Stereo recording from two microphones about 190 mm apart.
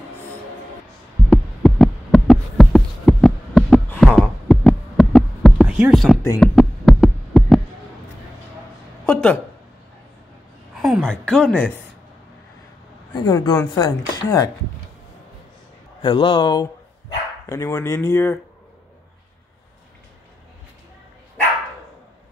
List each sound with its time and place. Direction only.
1.3 s a sound: 5° left (ahead or behind)
9.0 s speech: 10° left (ahead or behind)
10.8 s a woman's voice: centre (ahead or behind)
13.1 s speech: 20° left (ahead or behind)
16.0 s speech: 25° left (ahead or behind)